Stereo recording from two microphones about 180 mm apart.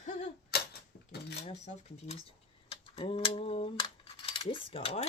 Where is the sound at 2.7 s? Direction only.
35° left (ahead or behind).